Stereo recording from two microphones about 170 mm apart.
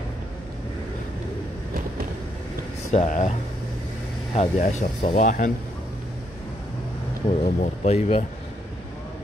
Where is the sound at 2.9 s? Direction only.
45° left (ahead or behind).